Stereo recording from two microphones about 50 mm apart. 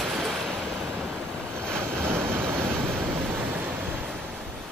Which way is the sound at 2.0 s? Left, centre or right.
Right.